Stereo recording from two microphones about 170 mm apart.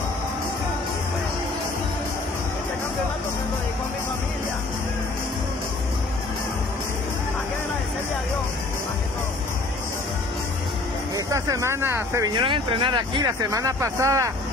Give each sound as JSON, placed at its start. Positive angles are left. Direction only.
{"t": 11.1, "sound": "speech", "side_deg": -20}
{"t": 12.4, "sound": "speech", "side_deg": -30}